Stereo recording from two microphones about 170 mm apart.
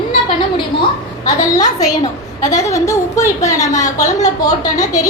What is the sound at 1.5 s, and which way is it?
A woman's voice, 20° left (ahead or behind).